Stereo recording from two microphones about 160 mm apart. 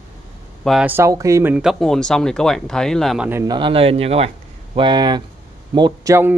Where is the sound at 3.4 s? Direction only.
30° right (ahead or behind).